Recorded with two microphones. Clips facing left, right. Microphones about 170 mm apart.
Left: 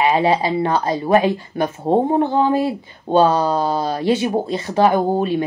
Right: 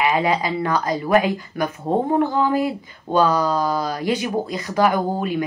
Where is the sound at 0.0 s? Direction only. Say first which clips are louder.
Left 3 dB; 30° left (ahead or behind).